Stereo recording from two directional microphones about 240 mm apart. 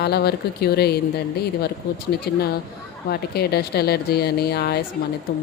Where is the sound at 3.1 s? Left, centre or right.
Left.